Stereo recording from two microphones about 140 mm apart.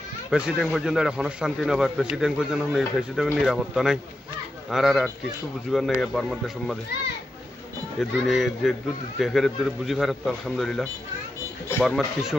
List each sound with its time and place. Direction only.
0.3 s speech: 5° right (ahead or behind)
8.0 s speech: centre (ahead or behind)